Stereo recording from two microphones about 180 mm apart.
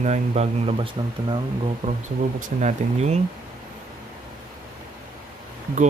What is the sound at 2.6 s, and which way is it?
Speech, 40° right (ahead or behind).